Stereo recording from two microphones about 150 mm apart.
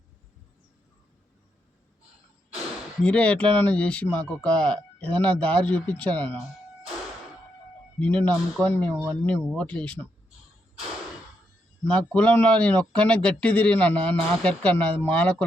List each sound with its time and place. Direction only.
3.0 s a man's voice: 10° left (ahead or behind)
7.9 s a man's voice: 10° left (ahead or behind)
11.9 s a man's voice: 5° left (ahead or behind)